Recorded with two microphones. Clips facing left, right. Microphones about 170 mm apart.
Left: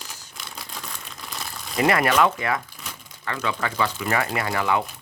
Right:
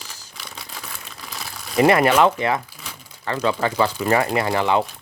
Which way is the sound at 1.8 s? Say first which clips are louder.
Right 5 dB; 25° right (ahead or behind).